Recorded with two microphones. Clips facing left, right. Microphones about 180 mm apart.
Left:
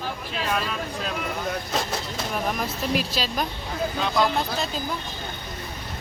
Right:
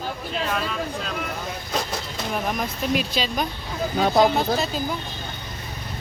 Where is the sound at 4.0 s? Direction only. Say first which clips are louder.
Right 6 dB; 45° right (ahead or behind).